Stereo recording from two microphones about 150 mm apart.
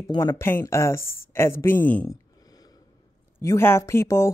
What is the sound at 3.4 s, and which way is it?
Speech, 15° left (ahead or behind).